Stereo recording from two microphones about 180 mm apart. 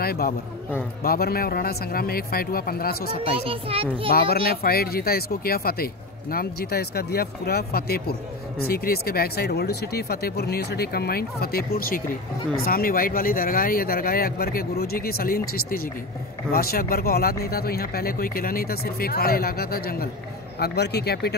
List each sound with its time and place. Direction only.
0.0 s a man's voice: 55° left (ahead or behind)
3.4 s a child's voice: 30° right (ahead or behind)
4.1 s speech: 55° left (ahead or behind)